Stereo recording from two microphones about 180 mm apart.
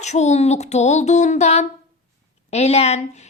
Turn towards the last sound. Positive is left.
turn(degrees=35)  # may be behind; listen again after turning